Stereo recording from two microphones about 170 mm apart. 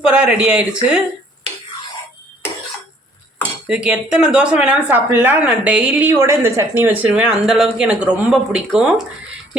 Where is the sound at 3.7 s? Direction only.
5° right (ahead or behind).